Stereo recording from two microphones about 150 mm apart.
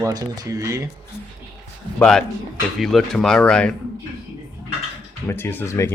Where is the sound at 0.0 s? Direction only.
25° right (ahead or behind).